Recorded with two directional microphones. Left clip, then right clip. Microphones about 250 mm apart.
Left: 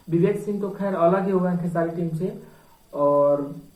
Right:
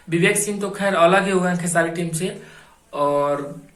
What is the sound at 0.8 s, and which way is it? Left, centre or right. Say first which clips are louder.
A man's voice: right 5 dB; right.